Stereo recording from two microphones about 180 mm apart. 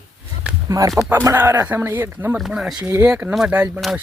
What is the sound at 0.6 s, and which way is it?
Speech, 20° right (ahead or behind).